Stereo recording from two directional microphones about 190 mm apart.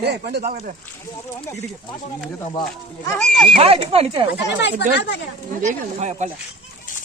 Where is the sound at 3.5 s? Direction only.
30° right (ahead or behind).